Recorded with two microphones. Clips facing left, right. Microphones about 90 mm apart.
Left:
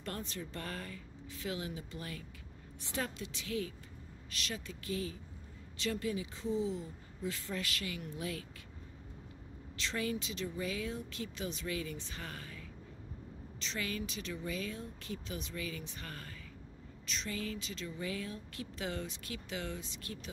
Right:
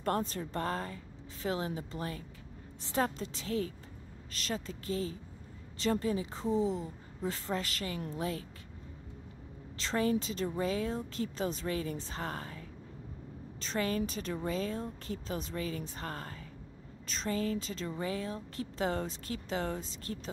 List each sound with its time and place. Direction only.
0.0 s speech: 40° right (ahead or behind)
9.8 s speech: 35° right (ahead or behind)